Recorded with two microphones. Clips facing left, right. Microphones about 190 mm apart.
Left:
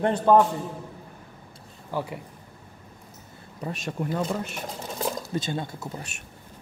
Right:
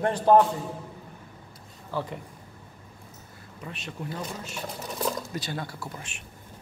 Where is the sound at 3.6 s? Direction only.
40° left (ahead or behind).